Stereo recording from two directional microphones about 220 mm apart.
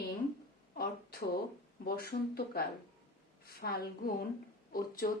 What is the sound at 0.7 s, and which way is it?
A woman's voice, 45° left (ahead or behind).